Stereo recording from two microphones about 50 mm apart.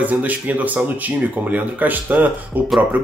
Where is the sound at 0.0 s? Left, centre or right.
Right.